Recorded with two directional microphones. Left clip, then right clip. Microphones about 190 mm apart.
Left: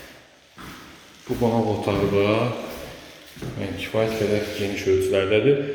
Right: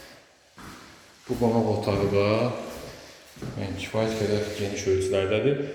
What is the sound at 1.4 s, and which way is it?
A man's voice, centre (ahead or behind).